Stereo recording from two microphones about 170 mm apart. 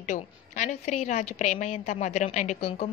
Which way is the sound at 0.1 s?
45° left (ahead or behind).